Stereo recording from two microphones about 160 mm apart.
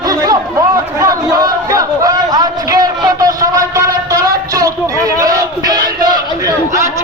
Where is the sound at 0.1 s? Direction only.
20° right (ahead or behind).